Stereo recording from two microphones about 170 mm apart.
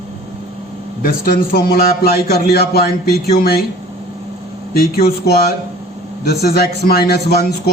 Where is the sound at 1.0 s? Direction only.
60° left (ahead or behind).